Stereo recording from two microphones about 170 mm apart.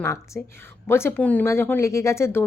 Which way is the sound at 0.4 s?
10° left (ahead or behind).